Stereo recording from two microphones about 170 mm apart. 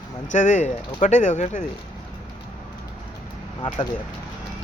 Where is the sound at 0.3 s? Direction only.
45° left (ahead or behind).